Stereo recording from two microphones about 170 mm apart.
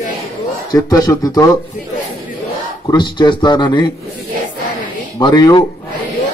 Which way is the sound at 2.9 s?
25° left (ahead or behind).